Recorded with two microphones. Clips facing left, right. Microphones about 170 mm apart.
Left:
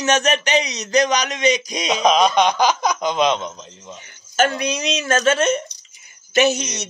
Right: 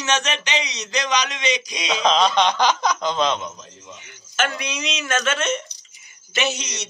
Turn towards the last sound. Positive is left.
turn(degrees=45)  # may be behind; listen again after turning